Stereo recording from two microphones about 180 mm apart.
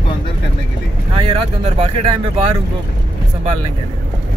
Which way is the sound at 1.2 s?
30° right (ahead or behind).